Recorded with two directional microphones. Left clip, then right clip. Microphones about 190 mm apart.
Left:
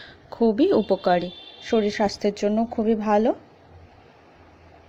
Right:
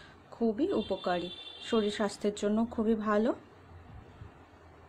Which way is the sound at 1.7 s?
15° left (ahead or behind).